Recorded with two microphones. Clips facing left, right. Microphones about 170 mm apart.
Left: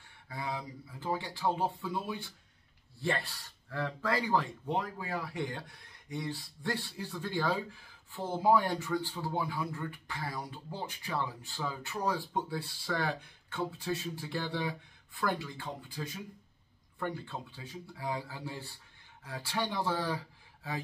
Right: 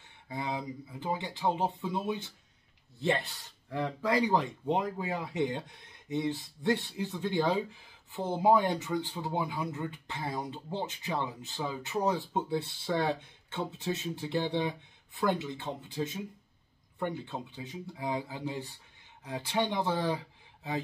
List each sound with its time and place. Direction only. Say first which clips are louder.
0.3 s speech: right 3 dB; 20° right (ahead or behind)